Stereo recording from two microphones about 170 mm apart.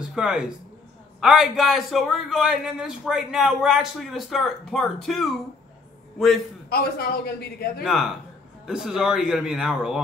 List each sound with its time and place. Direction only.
0.0 s a man's voice: 5° right (ahead or behind)
6.7 s a man's voice: 65° left (ahead or behind)
7.8 s a man's voice: centre (ahead or behind)